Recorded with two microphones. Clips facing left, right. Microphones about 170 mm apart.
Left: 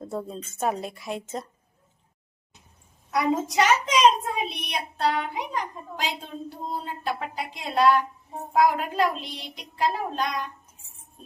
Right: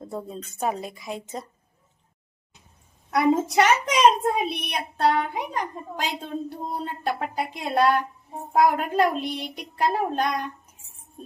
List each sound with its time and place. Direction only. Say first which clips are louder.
0.0 s a woman's voice: left 1 dB; centre (ahead or behind)
3.1 s a child's voice: right 4 dB; 60° right (ahead or behind)